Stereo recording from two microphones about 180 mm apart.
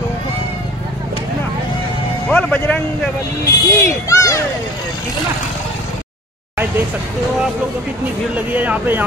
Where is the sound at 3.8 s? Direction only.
15° left (ahead or behind).